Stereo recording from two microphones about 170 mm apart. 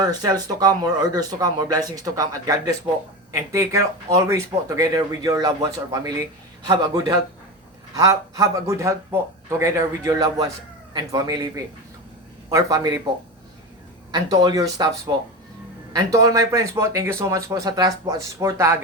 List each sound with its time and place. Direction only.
0.0 s a man's voice: 25° right (ahead or behind)
14.1 s speech: 20° right (ahead or behind)